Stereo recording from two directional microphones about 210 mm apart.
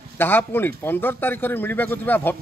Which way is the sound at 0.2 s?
10° left (ahead or behind).